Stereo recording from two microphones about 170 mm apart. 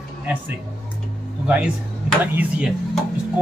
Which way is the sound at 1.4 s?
5° right (ahead or behind).